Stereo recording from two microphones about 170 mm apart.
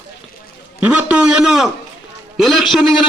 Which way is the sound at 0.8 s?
10° right (ahead or behind).